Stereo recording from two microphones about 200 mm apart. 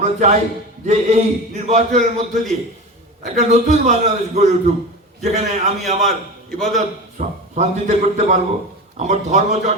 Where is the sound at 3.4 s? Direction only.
35° right (ahead or behind).